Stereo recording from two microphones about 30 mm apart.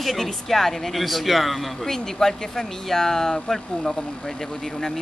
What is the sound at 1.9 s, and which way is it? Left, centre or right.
Speech, centre.